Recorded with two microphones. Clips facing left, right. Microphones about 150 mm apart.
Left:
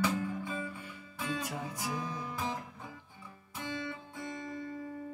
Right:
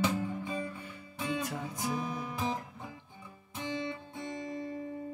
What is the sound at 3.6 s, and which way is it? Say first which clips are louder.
Music: right 3 dB; 20° right (ahead or behind).